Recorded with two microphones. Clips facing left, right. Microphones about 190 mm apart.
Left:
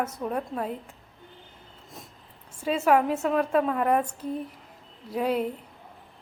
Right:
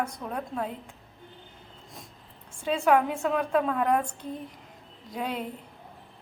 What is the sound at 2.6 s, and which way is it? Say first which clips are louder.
A woman's voice: left 1 dB; 5° left (ahead or behind).